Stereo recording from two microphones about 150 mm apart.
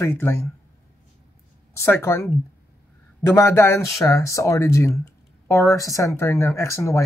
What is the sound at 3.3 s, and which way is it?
Speech, 20° left (ahead or behind).